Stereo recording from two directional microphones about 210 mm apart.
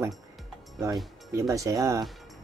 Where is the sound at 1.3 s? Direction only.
15° right (ahead or behind).